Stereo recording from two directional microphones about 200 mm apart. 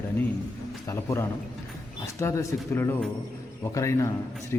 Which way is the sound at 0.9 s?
15° left (ahead or behind).